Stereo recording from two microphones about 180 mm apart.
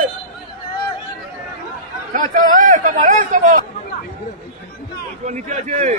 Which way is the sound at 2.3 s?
50° right (ahead or behind).